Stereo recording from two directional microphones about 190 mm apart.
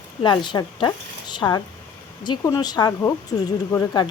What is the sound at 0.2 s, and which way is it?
Speech, 25° left (ahead or behind).